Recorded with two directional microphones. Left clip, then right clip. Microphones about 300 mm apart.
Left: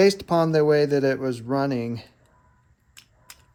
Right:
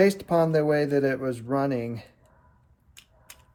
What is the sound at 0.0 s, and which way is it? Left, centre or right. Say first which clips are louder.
Speech: left 2 dB; centre.